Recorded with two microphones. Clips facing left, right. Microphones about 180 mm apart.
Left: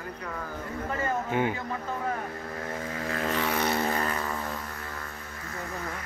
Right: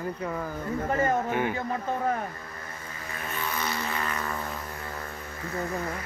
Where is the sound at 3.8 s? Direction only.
40° left (ahead or behind).